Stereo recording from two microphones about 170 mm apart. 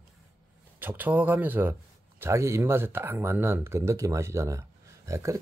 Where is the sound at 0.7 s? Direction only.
10° right (ahead or behind).